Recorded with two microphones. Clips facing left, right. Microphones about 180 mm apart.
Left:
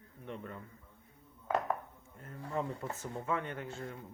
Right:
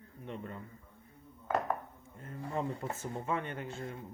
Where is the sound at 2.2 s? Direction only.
20° right (ahead or behind).